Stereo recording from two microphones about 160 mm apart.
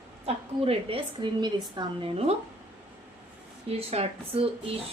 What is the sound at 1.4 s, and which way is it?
Speech, 25° right (ahead or behind).